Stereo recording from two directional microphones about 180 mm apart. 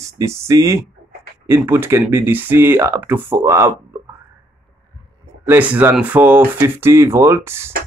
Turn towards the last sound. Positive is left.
turn(degrees=-15)  # may be behind; listen again after turning